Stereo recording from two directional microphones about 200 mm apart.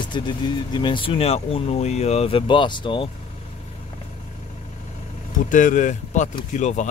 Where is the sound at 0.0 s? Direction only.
25° left (ahead or behind).